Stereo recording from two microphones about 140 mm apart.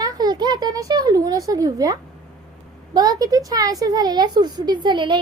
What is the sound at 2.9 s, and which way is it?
A woman's voice, 25° right (ahead or behind).